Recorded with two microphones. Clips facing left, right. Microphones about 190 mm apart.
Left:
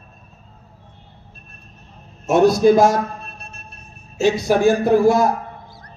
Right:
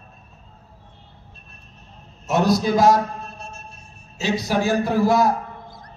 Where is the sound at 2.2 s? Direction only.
55° left (ahead or behind).